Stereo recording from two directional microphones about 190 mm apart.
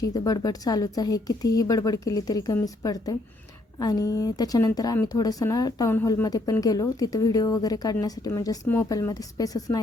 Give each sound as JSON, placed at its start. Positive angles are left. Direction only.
{"t": 0.0, "sound": "speech", "side_deg": 20}